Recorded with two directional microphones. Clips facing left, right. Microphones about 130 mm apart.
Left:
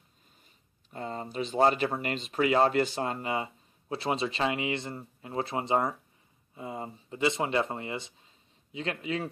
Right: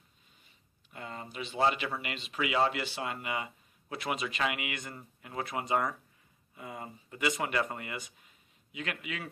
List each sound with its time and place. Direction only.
0.8 s speech: 35° left (ahead or behind)